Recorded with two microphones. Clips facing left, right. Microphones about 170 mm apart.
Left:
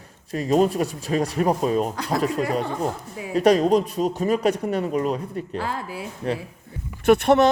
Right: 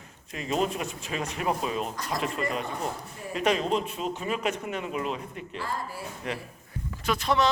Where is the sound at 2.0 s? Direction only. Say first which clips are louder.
Left 7 dB; 70° left (ahead or behind).